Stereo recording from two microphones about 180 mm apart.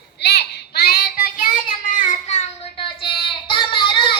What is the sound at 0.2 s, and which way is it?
Child singing, 70° left (ahead or behind).